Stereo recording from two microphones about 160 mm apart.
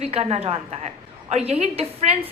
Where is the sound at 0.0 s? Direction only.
40° right (ahead or behind).